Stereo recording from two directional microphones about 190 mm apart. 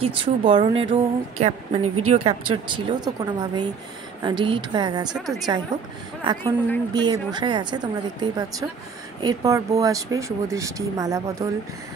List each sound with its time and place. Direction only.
0.0 s a woman's voice: 30° right (ahead or behind)
5.1 s a woman's voice: centre (ahead or behind)
5.7 s a woman's voice: 20° right (ahead or behind)
6.9 s a woman's voice: 20° right (ahead or behind)